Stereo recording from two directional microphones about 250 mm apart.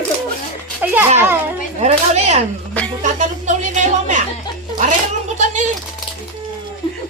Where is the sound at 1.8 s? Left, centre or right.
Right.